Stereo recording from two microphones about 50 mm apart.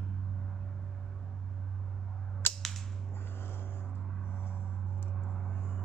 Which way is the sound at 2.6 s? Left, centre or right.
Centre.